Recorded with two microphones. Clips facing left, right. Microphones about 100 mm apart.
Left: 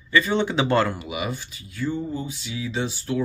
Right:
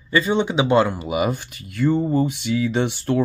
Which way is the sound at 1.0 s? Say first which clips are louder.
Right 7 dB; 40° right (ahead or behind).